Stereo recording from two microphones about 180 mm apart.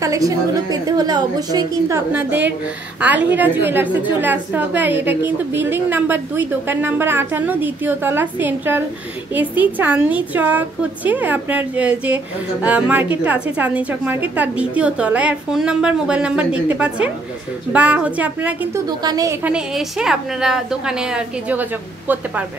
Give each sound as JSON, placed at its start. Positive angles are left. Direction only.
{"t": 0.0, "sound": "a woman's voice", "side_deg": -20}
{"t": 18.9, "sound": "a woman's voice", "side_deg": -20}
{"t": 19.4, "sound": "a woman's voice", "side_deg": -5}